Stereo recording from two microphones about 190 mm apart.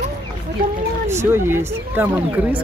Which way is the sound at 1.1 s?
15° right (ahead or behind).